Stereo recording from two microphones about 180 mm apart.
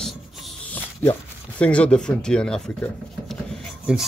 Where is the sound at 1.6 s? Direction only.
5° left (ahead or behind).